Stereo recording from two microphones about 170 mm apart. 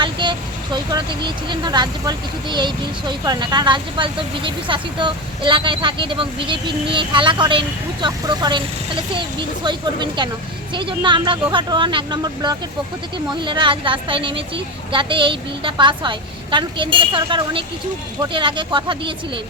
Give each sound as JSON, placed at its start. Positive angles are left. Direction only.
{"t": 0.0, "sound": "speech", "side_deg": -30}
{"t": 9.6, "sound": "speech", "side_deg": -25}